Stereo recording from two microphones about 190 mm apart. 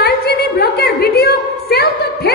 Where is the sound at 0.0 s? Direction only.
55° left (ahead or behind).